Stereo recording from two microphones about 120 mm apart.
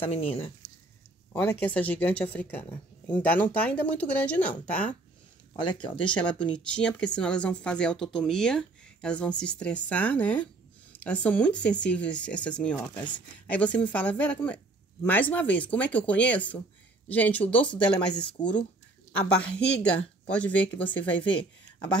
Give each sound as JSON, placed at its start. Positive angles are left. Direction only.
{"t": 0.0, "sound": "speech", "side_deg": 55}
{"t": 1.3, "sound": "speech", "side_deg": 15}
{"t": 5.5, "sound": "speech", "side_deg": 40}
{"t": 6.3, "sound": "speech", "side_deg": 10}
{"t": 19.5, "sound": "speech", "side_deg": 10}
{"t": 21.2, "sound": "speech", "side_deg": 45}